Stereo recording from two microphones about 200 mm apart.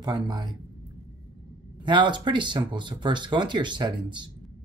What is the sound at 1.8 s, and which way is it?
Speech, 25° right (ahead or behind).